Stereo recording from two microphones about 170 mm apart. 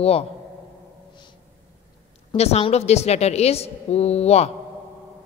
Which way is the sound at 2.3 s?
40° left (ahead or behind).